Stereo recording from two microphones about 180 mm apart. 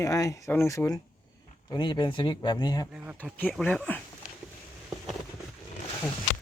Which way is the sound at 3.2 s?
10° left (ahead or behind).